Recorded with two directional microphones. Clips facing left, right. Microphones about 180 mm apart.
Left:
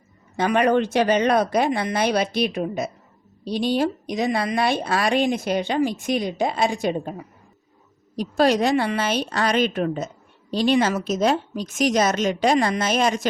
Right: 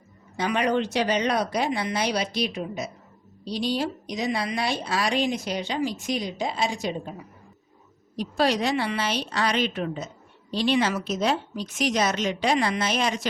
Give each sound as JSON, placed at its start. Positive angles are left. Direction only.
{"t": 0.3, "sound": "a woman's voice", "side_deg": 55}